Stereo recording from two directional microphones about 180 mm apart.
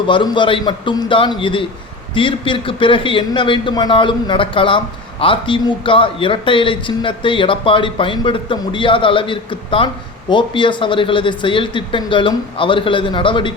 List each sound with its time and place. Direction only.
0.1 s a man's voice: 25° left (ahead or behind)